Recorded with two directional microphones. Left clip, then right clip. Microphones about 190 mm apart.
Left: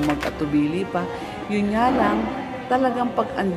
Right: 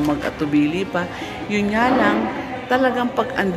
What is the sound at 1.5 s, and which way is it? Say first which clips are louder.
A woman's voice: right 2 dB; 10° left (ahead or behind).